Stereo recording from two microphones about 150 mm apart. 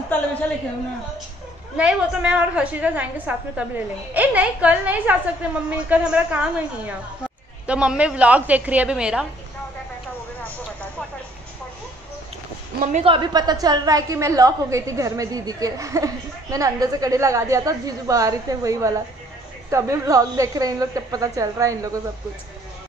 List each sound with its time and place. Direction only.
1.8 s a woman's voice: 5° right (ahead or behind)
10.4 s vehicle: 10° left (ahead or behind)
13.0 s a woman's voice: 30° right (ahead or behind)